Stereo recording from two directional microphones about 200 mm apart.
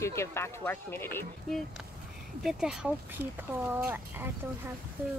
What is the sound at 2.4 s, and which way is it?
Speech, 5° right (ahead or behind).